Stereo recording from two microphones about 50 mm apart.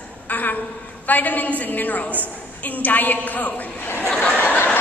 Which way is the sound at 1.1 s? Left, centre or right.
Left.